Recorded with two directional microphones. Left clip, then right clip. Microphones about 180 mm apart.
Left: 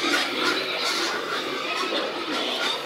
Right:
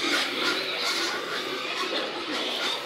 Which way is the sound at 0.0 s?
50° left (ahead or behind).